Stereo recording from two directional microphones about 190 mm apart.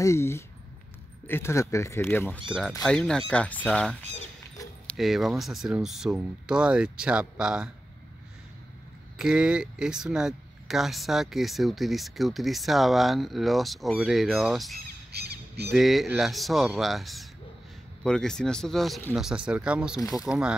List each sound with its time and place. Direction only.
0.0 s speech: 15° left (ahead or behind)
4.9 s speech: centre (ahead or behind)
9.2 s speech: 5° right (ahead or behind)
15.1 s squawk: 60° right (ahead or behind)
15.7 s speech: centre (ahead or behind)
20.0 s speech: 20° left (ahead or behind)
20.2 s speech: 5° right (ahead or behind)